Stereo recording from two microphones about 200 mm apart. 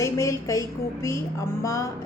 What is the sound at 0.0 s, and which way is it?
A woman's voice, 15° left (ahead or behind).